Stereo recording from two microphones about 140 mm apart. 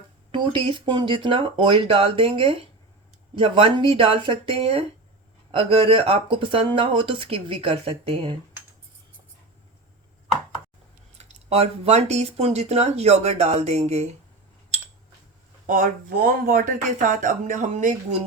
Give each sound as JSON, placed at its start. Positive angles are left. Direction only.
{"t": 0.3, "sound": "speech", "side_deg": -35}
{"t": 11.2, "sound": "speech", "side_deg": -50}
{"t": 15.6, "sound": "speech", "side_deg": -75}